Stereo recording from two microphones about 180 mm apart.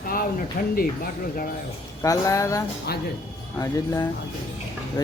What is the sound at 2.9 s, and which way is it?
Speech, 60° left (ahead or behind).